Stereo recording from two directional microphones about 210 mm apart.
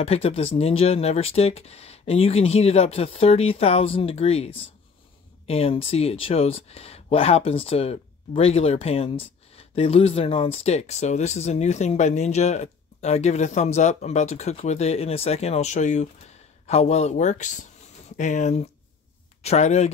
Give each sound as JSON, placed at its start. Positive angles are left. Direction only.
{"t": 0.0, "sound": "speech", "side_deg": 30}